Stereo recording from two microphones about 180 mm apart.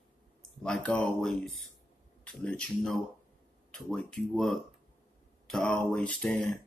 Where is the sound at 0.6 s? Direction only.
5° left (ahead or behind).